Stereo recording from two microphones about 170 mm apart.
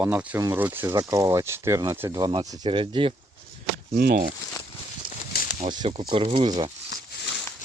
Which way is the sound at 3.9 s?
70° right (ahead or behind).